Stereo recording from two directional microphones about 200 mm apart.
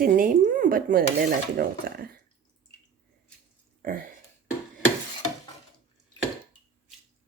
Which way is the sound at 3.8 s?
45° right (ahead or behind).